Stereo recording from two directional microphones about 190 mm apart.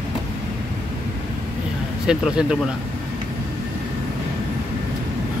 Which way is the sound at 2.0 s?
5° right (ahead or behind).